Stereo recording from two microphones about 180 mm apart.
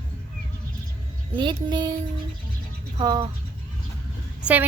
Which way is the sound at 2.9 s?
20° right (ahead or behind).